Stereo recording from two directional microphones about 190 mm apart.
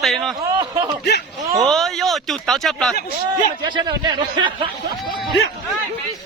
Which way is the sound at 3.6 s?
20° right (ahead or behind).